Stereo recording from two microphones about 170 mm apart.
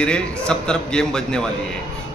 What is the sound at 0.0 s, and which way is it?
A man's voice, 5° left (ahead or behind).